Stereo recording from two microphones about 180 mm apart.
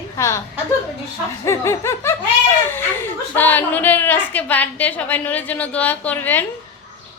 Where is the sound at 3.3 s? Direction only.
10° left (ahead or behind).